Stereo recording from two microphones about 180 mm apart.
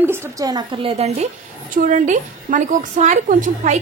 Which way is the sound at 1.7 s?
45° right (ahead or behind).